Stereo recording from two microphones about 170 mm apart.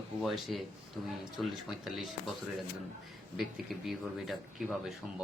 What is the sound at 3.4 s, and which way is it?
Speech, centre (ahead or behind).